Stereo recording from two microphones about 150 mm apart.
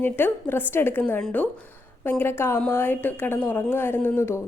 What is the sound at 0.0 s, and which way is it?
A woman's voice, 15° left (ahead or behind).